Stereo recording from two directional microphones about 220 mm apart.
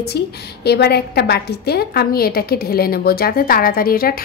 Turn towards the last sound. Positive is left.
turn(degrees=40)  # may be behind; listen again after turning